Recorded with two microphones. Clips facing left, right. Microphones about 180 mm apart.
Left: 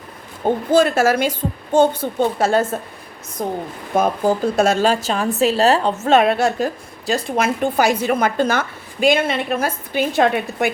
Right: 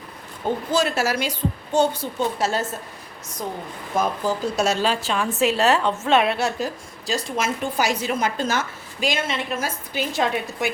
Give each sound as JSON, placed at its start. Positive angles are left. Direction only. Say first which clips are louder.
{"t": 0.4, "sound": "a woman's voice", "louder": "left 7 dB", "side_deg": 50}
{"t": 7.1, "sound": "a woman's voice", "louder": "left 5 dB", "side_deg": 60}